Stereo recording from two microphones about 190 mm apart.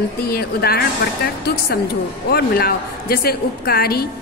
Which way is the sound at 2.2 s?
55° left (ahead or behind).